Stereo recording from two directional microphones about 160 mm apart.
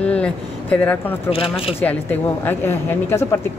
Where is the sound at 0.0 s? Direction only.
5° left (ahead or behind).